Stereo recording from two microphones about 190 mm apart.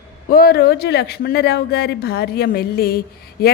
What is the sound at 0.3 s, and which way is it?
A woman's voice, 50° left (ahead or behind).